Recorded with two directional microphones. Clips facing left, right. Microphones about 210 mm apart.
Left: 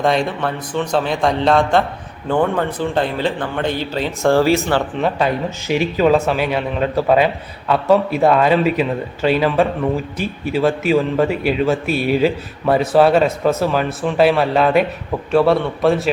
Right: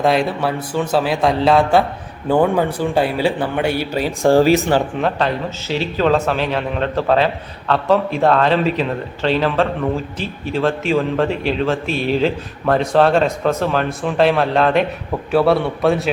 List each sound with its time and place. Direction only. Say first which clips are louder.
0.0 s speech: right 1 dB; 5° right (ahead or behind)
5.0 s a man's voice: left 1 dB; 10° left (ahead or behind)